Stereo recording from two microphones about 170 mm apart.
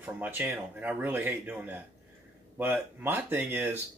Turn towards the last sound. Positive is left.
turn(degrees=-10)  # may be behind; listen again after turning